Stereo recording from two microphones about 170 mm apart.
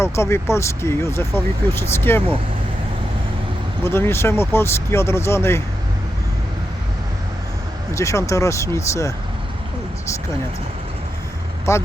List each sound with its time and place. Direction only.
0.0 s speech: 15° left (ahead or behind)
3.8 s speech: 15° left (ahead or behind)
7.9 s speech: 15° left (ahead or behind)
11.7 s speech: 15° left (ahead or behind)